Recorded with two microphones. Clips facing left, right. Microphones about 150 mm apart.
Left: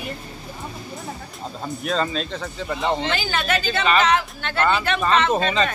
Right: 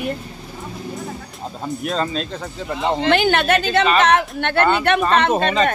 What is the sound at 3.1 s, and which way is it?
Speech, 60° right (ahead or behind).